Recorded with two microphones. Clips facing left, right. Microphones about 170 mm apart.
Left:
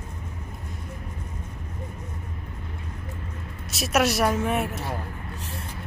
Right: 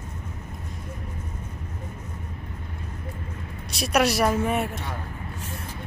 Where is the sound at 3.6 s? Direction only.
Centre (ahead or behind).